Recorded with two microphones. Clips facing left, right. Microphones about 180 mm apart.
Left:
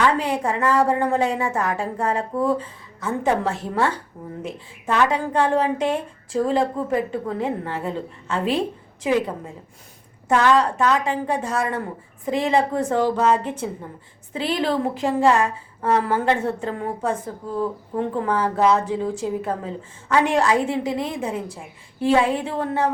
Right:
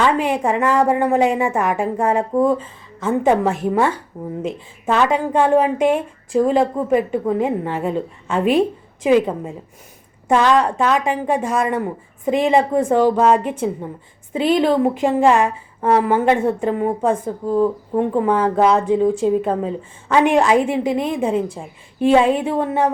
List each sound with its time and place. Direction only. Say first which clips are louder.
0.0 s a woman's voice: right 3 dB; 20° right (ahead or behind)
4.9 s a woman's voice: right 3 dB; 20° right (ahead or behind)